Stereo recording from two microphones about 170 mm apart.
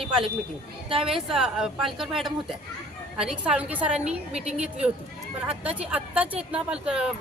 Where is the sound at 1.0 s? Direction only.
Centre (ahead or behind).